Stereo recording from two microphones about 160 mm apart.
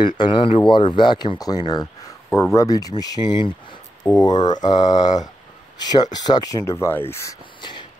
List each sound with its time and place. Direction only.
0.0 s speech: 30° left (ahead or behind)